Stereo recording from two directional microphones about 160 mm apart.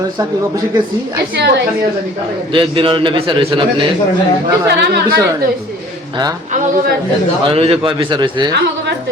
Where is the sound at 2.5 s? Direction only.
35° right (ahead or behind).